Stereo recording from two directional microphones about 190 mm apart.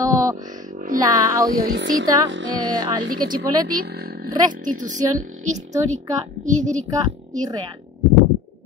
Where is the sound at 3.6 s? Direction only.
50° right (ahead or behind).